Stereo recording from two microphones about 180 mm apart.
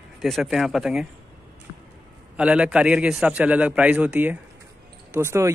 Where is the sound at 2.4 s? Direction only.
5° right (ahead or behind).